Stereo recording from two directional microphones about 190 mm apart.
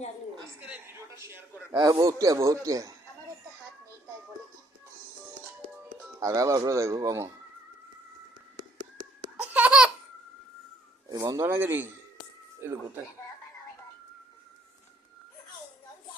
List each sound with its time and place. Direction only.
0.6 s a sound: 10° right (ahead or behind)
1.7 s a man's voice: 20° right (ahead or behind)
6.1 s a man's voice: 15° right (ahead or behind)
9.4 s laughter: 5° right (ahead or behind)
11.1 s a man's voice: 20° right (ahead or behind)